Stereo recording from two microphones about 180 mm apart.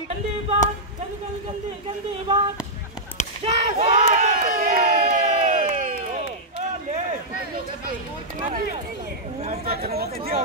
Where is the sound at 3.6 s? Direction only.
35° right (ahead or behind).